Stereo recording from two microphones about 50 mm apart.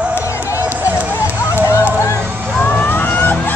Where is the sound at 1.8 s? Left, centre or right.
Left.